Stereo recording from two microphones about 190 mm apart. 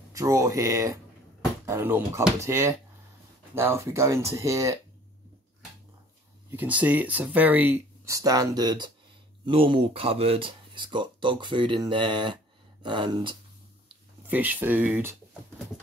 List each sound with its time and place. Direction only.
0.1 s speech: 15° right (ahead or behind)
6.5 s speech: 10° right (ahead or behind); by 13.4 s 25° right (ahead or behind)
14.2 s speech: 10° right (ahead or behind)